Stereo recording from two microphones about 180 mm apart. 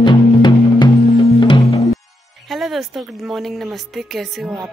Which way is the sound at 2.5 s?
Centre (ahead or behind).